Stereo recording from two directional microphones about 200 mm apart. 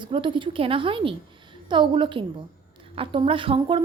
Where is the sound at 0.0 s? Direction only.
25° right (ahead or behind).